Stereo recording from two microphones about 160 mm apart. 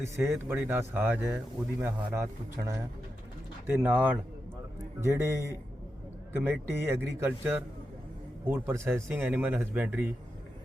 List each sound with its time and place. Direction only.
0.3 s speech: 15° right (ahead or behind)